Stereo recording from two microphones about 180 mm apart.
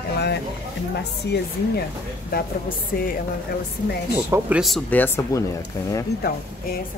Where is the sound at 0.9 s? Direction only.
65° left (ahead or behind).